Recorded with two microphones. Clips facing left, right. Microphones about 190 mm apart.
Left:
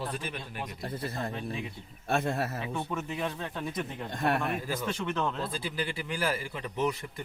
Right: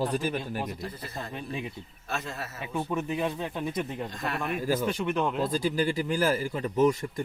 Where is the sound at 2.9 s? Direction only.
15° right (ahead or behind).